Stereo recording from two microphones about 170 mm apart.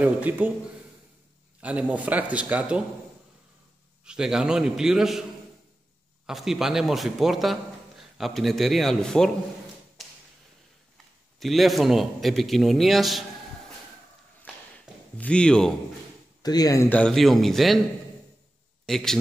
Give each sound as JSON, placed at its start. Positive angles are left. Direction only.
{"t": 0.0, "sound": "a man's voice", "side_deg": -10}
{"t": 1.6, "sound": "a man's voice", "side_deg": -10}
{"t": 4.0, "sound": "a man's voice", "side_deg": -5}
{"t": 6.2, "sound": "a man's voice", "side_deg": 0}
{"t": 11.3, "sound": "a man's voice", "side_deg": 0}
{"t": 15.1, "sound": "a man's voice", "side_deg": 5}
{"t": 16.4, "sound": "speech", "side_deg": 20}
{"t": 17.0, "sound": "a man's voice", "side_deg": 0}
{"t": 18.9, "sound": "a man's voice", "side_deg": 0}